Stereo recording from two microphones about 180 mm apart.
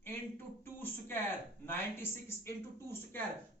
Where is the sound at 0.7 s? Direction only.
10° left (ahead or behind).